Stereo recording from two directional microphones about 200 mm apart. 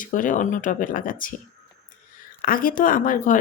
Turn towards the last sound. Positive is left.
turn(degrees=45)  # may be behind; listen again after turning